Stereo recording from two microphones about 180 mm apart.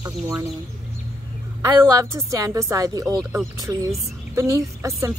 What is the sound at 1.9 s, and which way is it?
Speech, 20° right (ahead or behind).